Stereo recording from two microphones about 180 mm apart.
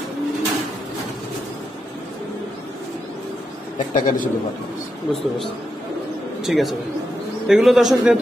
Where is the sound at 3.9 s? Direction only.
45° left (ahead or behind).